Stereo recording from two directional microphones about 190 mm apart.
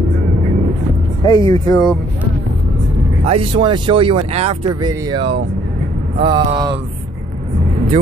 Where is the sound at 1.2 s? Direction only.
20° left (ahead or behind).